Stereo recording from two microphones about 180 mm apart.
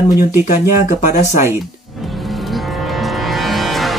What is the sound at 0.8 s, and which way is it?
Speech, 45° left (ahead or behind).